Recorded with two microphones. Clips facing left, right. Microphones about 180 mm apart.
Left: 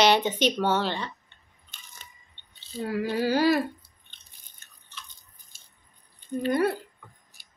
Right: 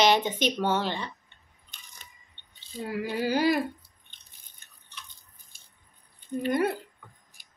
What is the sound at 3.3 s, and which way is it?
Speech, 15° right (ahead or behind).